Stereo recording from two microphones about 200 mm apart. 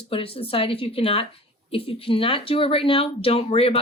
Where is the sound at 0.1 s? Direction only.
25° left (ahead or behind).